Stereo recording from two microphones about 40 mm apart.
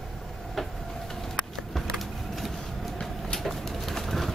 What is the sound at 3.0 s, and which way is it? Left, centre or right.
Bird, centre.